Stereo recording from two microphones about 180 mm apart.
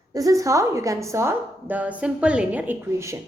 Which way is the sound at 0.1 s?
20° right (ahead or behind).